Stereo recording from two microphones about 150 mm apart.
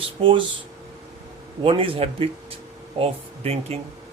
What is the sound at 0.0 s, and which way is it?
Speech, 35° right (ahead or behind).